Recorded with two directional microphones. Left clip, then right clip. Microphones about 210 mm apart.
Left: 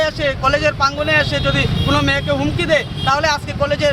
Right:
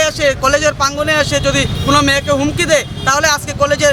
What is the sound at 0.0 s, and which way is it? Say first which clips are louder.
Speech: right 4 dB; 15° right (ahead or behind).